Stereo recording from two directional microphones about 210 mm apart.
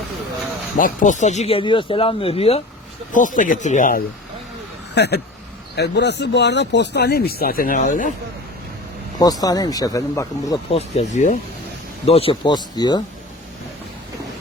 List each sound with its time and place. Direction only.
0.8 s speech: 40° left (ahead or behind)
3.2 s speech: 40° left (ahead or behind)
4.9 s speech: 55° left (ahead or behind)
9.1 s speech: 20° left (ahead or behind)
10.7 s speech: 30° left (ahead or behind)